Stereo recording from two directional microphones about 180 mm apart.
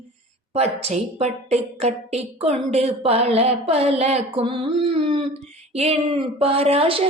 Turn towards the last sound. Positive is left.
turn(degrees=-30)  # may be behind; listen again after turning